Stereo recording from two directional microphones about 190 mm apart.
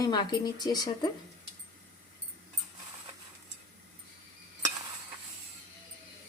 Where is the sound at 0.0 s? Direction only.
20° left (ahead or behind).